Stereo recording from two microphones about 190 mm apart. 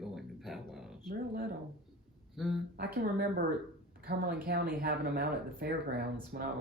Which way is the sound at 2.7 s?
55° right (ahead or behind).